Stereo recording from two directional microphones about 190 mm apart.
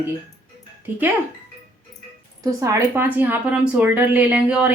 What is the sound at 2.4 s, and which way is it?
A woman's voice, 15° right (ahead or behind).